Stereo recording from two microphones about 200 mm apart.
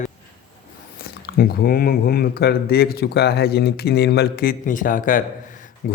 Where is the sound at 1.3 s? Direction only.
50° left (ahead or behind).